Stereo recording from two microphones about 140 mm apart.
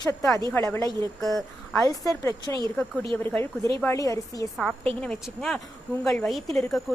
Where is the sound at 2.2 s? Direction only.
20° left (ahead or behind).